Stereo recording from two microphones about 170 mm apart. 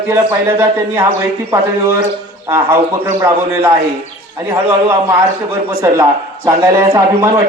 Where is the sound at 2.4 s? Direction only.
15° right (ahead or behind).